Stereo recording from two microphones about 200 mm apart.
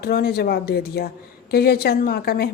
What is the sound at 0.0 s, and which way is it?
A woman's voice, 50° left (ahead or behind).